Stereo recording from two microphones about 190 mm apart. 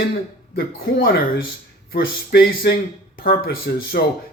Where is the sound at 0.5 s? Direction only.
50° left (ahead or behind).